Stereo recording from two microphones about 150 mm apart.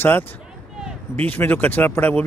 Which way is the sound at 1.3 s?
10° left (ahead or behind).